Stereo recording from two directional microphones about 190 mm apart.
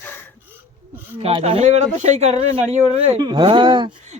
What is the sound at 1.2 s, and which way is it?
Speech, 30° right (ahead or behind).